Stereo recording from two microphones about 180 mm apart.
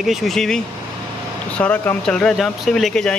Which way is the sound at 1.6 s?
10° left (ahead or behind).